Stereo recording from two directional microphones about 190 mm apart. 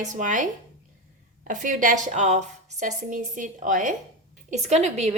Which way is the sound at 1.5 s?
45° right (ahead or behind).